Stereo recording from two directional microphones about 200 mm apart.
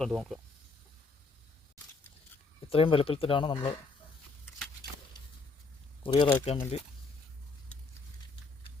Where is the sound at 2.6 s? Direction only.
30° left (ahead or behind).